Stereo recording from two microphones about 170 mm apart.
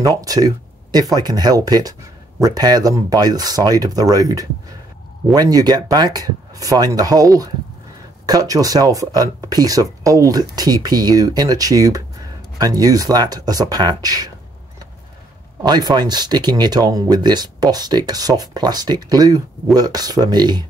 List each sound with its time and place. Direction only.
0.0 s speech: 20° right (ahead or behind)
15.6 s speech: 25° right (ahead or behind)